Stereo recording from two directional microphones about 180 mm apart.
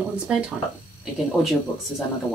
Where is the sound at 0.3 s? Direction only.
5° right (ahead or behind).